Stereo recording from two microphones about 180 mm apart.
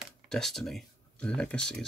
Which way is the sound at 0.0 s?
Centre (ahead or behind).